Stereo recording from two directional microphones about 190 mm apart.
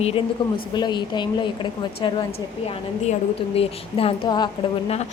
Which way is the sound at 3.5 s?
30° left (ahead or behind).